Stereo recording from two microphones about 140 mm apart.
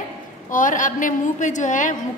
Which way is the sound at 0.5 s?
70° left (ahead or behind).